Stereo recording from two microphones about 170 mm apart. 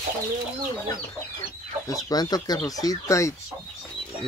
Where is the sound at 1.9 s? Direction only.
25° left (ahead or behind).